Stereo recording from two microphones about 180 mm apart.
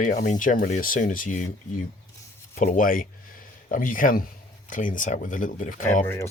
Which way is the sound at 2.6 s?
45° left (ahead or behind).